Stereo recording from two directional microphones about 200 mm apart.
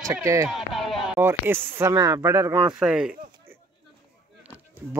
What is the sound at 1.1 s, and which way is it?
Speech, 10° right (ahead or behind).